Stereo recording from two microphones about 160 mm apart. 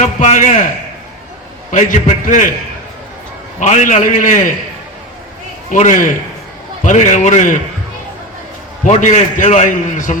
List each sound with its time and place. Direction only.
0.2 s a man's voice: 50° left (ahead or behind)
1.7 s a man's voice: 55° left (ahead or behind)
3.6 s a man's voice: 50° left (ahead or behind)
5.7 s a man's voice: 50° left (ahead or behind)
8.8 s a man's voice: 50° left (ahead or behind)